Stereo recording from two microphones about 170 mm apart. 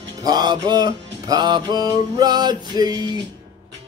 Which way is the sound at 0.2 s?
25° right (ahead or behind).